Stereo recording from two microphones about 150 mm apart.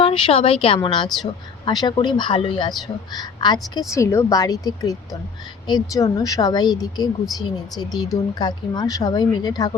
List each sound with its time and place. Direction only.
0.0 s speech: 35° left (ahead or behind)